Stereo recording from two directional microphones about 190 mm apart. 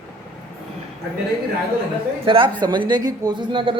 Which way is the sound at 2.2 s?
25° right (ahead or behind).